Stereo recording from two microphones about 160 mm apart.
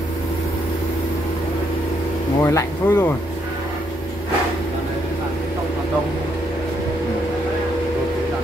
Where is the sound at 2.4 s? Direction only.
20° left (ahead or behind).